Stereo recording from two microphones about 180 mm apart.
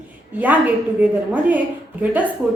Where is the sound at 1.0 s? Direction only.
10° right (ahead or behind).